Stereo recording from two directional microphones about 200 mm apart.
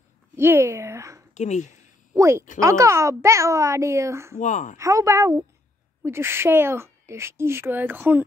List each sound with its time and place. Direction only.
0.4 s a sound: 10° right (ahead or behind)
1.3 s speech: 35° left (ahead or behind)
2.1 s speech: 15° right (ahead or behind)
4.4 s speech: 40° left (ahead or behind)
4.7 s speech: 15° right (ahead or behind)